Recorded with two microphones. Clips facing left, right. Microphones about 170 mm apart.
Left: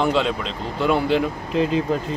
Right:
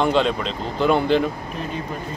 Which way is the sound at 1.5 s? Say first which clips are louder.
Left 9 dB; 90° left.